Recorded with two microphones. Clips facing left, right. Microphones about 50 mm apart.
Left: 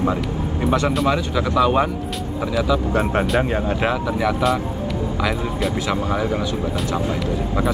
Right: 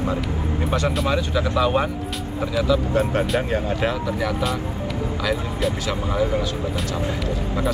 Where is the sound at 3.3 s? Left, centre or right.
Centre.